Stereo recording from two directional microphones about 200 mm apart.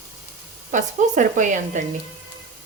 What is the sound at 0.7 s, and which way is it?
Speech, 40° right (ahead or behind).